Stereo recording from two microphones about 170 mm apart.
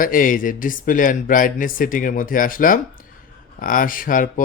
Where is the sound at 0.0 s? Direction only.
55° left (ahead or behind).